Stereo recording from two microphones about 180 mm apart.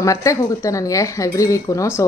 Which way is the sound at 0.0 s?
15° left (ahead or behind).